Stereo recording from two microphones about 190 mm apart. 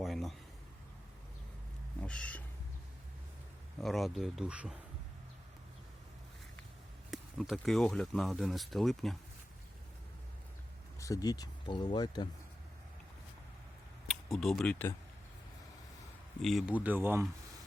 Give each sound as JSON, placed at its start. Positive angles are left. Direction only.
{"t": 0.0, "sound": "a sound", "side_deg": 0}
{"t": 2.0, "sound": "a sound", "side_deg": 5}
{"t": 3.8, "sound": "speech", "side_deg": 0}
{"t": 7.1, "sound": "speech", "side_deg": 0}
{"t": 11.0, "sound": "speech", "side_deg": 20}
{"t": 14.3, "sound": "speech", "side_deg": 0}
{"t": 16.4, "sound": "speech", "side_deg": 0}